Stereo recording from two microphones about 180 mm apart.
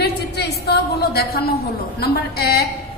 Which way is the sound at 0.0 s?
65° left (ahead or behind).